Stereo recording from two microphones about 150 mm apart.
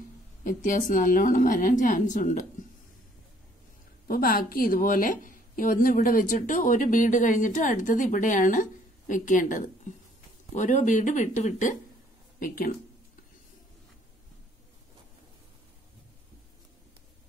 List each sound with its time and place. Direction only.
0.4 s a woman's voice: 60° left (ahead or behind)
4.1 s a woman's voice: 75° left (ahead or behind); by 11.7 s 55° left (ahead or behind)
12.4 s speech: 70° left (ahead or behind)